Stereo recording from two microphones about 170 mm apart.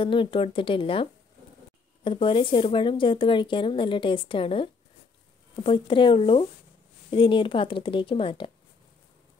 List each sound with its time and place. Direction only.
0.0 s speech: 30° left (ahead or behind)
2.0 s speech: 30° left (ahead or behind)